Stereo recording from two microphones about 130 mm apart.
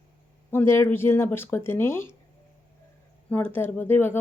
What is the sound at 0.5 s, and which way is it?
A woman's voice, 20° left (ahead or behind).